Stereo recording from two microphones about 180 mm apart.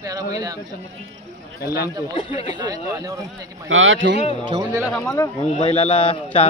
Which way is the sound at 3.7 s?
90° right.